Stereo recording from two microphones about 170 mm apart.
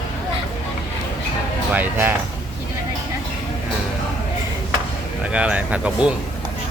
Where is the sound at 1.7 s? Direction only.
10° right (ahead or behind).